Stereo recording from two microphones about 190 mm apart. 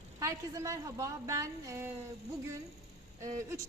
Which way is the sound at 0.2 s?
15° right (ahead or behind).